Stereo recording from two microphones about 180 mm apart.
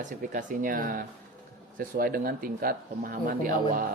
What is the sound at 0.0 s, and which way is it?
Speech, 45° right (ahead or behind).